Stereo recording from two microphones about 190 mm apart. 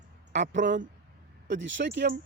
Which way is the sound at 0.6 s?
70° right (ahead or behind).